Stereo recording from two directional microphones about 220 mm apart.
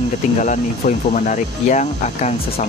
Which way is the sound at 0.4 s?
35° left (ahead or behind).